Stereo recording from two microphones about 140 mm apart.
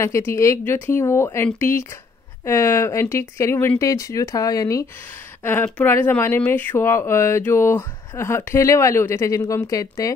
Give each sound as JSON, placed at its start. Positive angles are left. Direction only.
{"t": 0.0, "sound": "speech", "side_deg": 20}